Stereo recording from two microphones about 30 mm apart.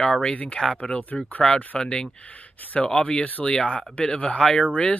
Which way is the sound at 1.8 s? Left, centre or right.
Left.